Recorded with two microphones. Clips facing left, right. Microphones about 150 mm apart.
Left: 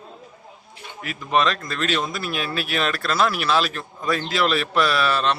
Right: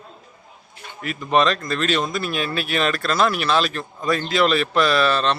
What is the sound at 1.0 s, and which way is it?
Speech, centre (ahead or behind).